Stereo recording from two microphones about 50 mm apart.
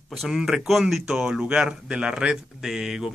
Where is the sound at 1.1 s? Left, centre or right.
Centre.